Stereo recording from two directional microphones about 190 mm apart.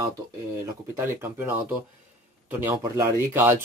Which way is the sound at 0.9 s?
10° right (ahead or behind).